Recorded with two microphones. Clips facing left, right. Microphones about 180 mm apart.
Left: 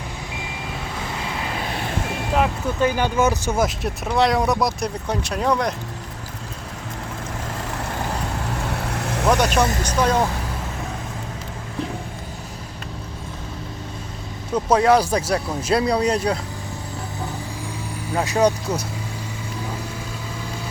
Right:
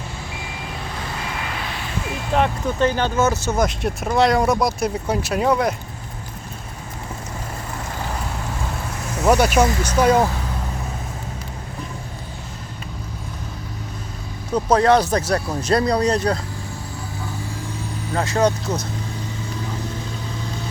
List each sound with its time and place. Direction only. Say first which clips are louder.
2.3 s speech: right 2 dB; 5° left (ahead or behind)
8.9 s vehicle: left 2 dB; 70° left (ahead or behind)
9.3 s speech: right 3 dB; 10° right (ahead or behind)
14.7 s speech: right 1 dB; 10° left (ahead or behind)
18.1 s speech: left 1 dB; 15° left (ahead or behind)